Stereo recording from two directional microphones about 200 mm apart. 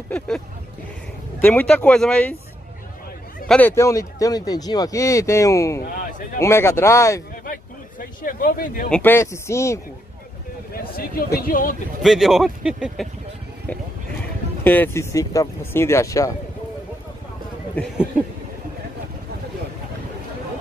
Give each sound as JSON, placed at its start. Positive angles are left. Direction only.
{"t": 1.4, "sound": "speech", "side_deg": 10}
{"t": 3.4, "sound": "speech", "side_deg": 10}
{"t": 7.4, "sound": "a sound", "side_deg": 45}
{"t": 8.9, "sound": "speech", "side_deg": 10}
{"t": 10.7, "sound": "speech", "side_deg": 50}
{"t": 12.0, "sound": "speech", "side_deg": 0}
{"t": 13.7, "sound": "a sound", "side_deg": 10}
{"t": 14.6, "sound": "speech", "side_deg": 10}